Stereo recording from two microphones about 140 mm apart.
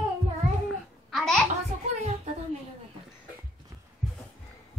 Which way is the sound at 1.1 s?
Centre (ahead or behind).